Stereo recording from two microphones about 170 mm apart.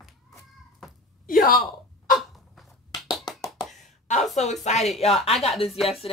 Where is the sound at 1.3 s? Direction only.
55° left (ahead or behind).